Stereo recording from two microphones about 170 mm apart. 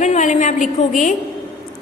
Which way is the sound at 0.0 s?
45° left (ahead or behind).